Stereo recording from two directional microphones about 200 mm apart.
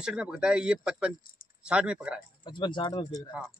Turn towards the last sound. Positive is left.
turn(degrees=20)  # may be behind; listen again after turning